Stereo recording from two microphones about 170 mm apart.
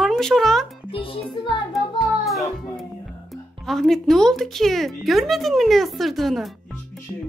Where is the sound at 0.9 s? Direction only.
30° left (ahead or behind).